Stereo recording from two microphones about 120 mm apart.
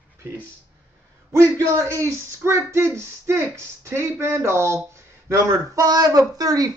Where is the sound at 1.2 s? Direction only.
25° right (ahead or behind).